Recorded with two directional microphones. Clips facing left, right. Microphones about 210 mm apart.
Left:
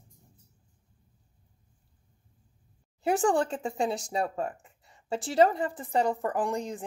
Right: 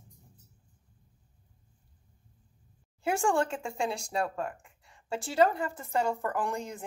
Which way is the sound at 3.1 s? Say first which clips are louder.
Left 2 dB; 20° left (ahead or behind).